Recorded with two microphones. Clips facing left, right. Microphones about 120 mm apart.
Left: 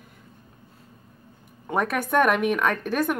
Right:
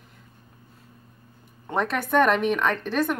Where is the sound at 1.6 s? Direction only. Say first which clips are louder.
Left 1 dB; 10° left (ahead or behind).